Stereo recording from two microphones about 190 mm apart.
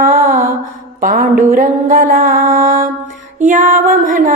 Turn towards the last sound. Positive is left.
turn(degrees=-45)  # may be behind; listen again after turning